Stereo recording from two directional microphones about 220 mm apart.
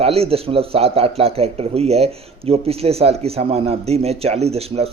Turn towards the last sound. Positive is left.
turn(degrees=-25)  # may be behind; listen again after turning